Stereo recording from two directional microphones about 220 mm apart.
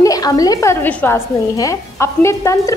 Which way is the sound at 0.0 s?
15° left (ahead or behind).